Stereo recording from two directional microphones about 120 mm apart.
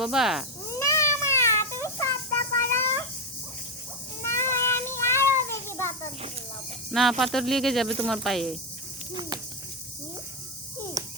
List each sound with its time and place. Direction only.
0.0 s speech: 5° right (ahead or behind)
0.7 s cat: 25° left (ahead or behind)
4.2 s child singing: 20° left (ahead or behind)
5.5 s cat: 20° left (ahead or behind)
6.9 s speech: centre (ahead or behind)
11.0 s a sound: 30° right (ahead or behind)